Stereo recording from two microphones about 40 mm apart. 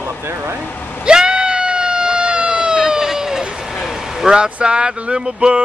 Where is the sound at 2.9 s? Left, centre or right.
Centre.